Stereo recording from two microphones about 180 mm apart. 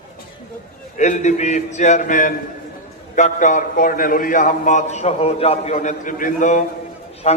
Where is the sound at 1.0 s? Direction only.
40° left (ahead or behind).